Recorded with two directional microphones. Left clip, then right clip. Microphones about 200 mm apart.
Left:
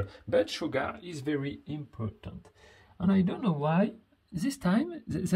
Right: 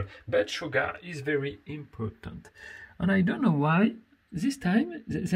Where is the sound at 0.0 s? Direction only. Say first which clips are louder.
Even; 20° left (ahead or behind).